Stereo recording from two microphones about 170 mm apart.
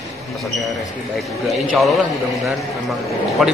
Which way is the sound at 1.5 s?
Centre (ahead or behind).